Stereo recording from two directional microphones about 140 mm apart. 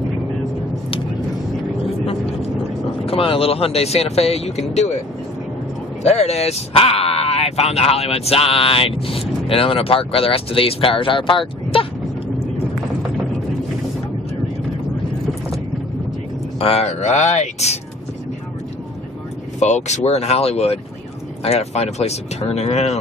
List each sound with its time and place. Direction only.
3.1 s speech: 40° left (ahead or behind)
6.0 s speech: 50° left (ahead or behind)
16.5 s speech: 45° left (ahead or behind)
19.6 s speech: 55° left (ahead or behind)